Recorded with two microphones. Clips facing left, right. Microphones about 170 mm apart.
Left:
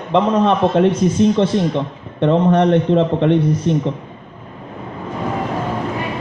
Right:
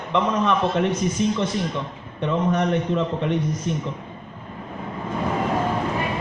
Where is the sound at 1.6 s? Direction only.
60° left (ahead or behind).